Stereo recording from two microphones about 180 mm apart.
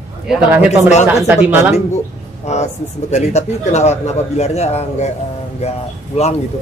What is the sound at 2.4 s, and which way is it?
Speech, 40° left (ahead or behind).